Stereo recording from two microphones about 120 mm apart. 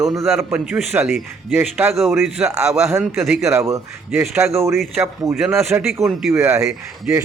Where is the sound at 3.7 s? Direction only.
20° right (ahead or behind).